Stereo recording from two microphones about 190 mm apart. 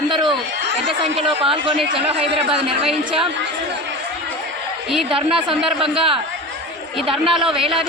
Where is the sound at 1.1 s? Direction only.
30° right (ahead or behind).